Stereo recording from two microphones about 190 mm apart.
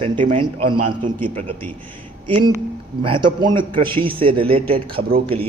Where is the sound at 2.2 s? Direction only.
30° right (ahead or behind).